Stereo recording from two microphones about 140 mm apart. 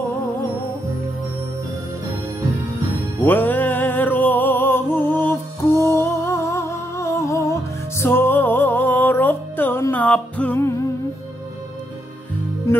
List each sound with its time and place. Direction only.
3.3 s music: 15° left (ahead or behind)
12.7 s music: 20° left (ahead or behind)